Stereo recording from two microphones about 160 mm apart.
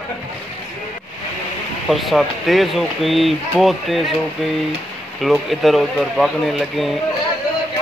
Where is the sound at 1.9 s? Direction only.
Centre (ahead or behind).